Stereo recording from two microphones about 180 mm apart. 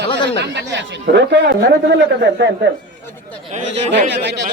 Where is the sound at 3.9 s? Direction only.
75° right (ahead or behind).